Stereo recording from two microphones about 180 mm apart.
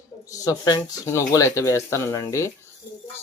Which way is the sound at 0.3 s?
20° left (ahead or behind).